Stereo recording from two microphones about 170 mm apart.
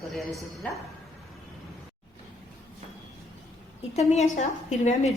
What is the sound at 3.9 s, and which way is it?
A woman's voice, 40° left (ahead or behind).